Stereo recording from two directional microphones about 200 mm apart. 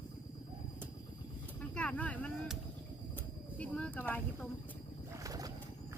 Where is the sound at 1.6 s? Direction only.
5° left (ahead or behind).